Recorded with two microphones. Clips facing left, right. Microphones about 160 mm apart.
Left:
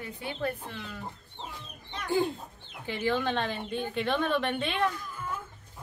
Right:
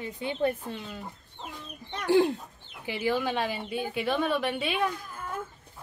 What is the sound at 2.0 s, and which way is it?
Speech, 80° right.